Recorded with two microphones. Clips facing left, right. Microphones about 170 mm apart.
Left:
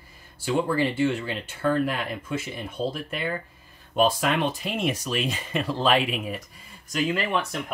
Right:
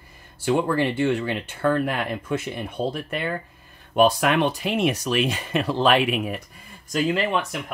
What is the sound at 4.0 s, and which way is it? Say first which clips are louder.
Speech: right 4 dB; 65° right (ahead or behind).